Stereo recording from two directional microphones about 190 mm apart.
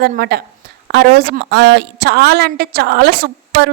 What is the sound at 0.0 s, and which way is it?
A woman's voice, 55° right (ahead or behind).